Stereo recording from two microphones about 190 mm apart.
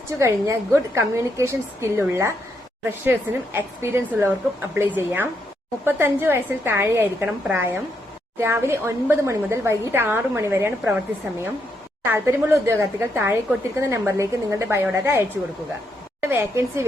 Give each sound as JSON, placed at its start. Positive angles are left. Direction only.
{"t": 0.2, "sound": "a woman's voice", "side_deg": -15}
{"t": 12.0, "sound": "a woman's voice", "side_deg": -15}
{"t": 16.2, "sound": "a woman's voice", "side_deg": -10}